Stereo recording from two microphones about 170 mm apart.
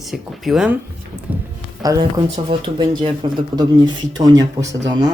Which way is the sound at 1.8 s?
20° right (ahead or behind).